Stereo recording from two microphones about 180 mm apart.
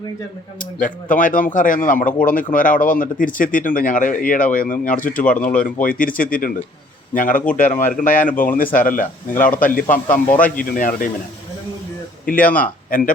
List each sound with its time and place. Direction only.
0.6 s speech: 45° left (ahead or behind)
12.2 s speech: 50° left (ahead or behind)